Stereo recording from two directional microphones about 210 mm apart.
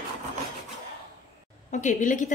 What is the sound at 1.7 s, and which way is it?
Speech, 35° left (ahead or behind).